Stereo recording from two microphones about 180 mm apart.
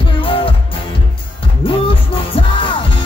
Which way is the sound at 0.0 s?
30° left (ahead or behind).